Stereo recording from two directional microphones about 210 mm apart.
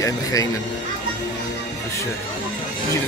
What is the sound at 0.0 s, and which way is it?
Speech, 15° left (ahead or behind).